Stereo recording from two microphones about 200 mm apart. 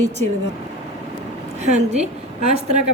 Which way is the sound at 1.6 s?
35° right (ahead or behind).